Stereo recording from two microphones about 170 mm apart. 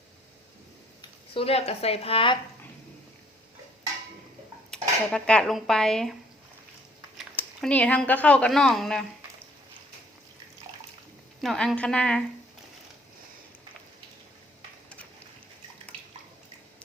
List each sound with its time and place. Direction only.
1.3 s a woman's voice: 35° left (ahead or behind)
4.7 s speech: 5° left (ahead or behind)
7.3 s speech: 10° left (ahead or behind)
11.3 s a woman's voice: 5° left (ahead or behind)